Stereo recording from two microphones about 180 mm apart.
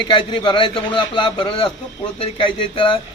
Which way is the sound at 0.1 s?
25° left (ahead or behind).